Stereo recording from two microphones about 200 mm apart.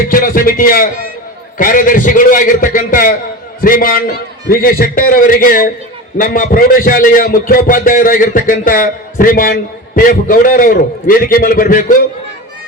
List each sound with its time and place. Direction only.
0.1 s a man's voice: 45° left (ahead or behind)